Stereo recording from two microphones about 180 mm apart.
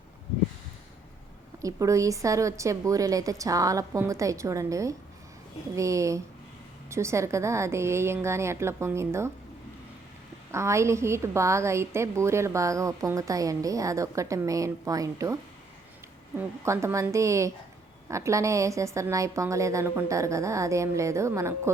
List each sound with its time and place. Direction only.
1.6 s a woman's voice: 15° right (ahead or behind)
10.5 s a woman's voice: 15° right (ahead or behind)
16.4 s a woman's voice: 15° right (ahead or behind)